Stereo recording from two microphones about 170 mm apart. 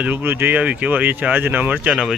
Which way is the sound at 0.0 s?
10° right (ahead or behind).